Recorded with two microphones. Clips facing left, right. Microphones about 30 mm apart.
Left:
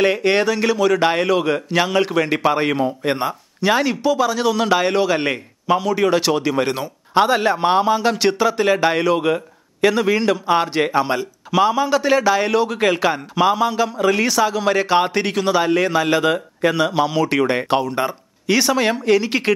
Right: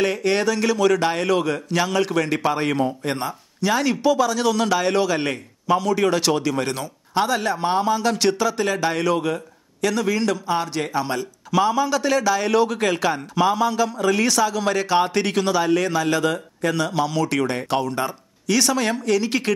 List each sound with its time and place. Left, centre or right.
0.0 s a man's voice: left
3.8 s a man's voice: centre